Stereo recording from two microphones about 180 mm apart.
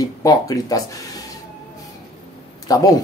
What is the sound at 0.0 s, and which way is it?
Speech, 20° left (ahead or behind).